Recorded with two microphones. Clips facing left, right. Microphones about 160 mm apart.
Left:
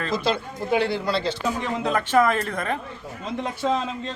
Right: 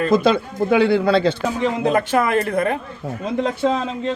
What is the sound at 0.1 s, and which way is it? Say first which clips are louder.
Speech: right 7 dB; 55° right (ahead or behind).